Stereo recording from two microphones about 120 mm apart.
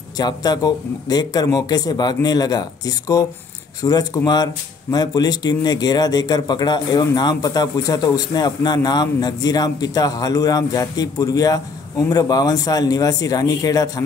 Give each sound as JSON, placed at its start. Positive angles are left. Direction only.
{"t": 0.2, "sound": "speech", "side_deg": 35}